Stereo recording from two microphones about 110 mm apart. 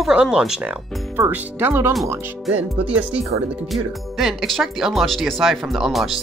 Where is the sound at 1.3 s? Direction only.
20° right (ahead or behind).